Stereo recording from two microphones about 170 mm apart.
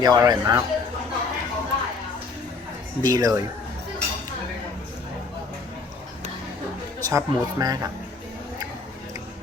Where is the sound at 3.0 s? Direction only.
25° right (ahead or behind).